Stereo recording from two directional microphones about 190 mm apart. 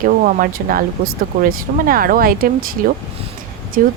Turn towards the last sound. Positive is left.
turn(degrees=-45)  # may be behind; listen again after turning